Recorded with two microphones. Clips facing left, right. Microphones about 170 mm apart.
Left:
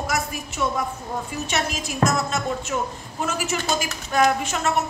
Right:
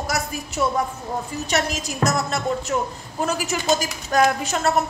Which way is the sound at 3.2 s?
40° right (ahead or behind).